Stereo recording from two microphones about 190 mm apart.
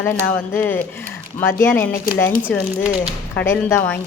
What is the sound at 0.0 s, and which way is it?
Speech, 10° left (ahead or behind).